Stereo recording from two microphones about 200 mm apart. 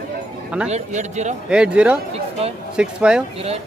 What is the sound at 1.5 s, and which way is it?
Speech, 5° right (ahead or behind).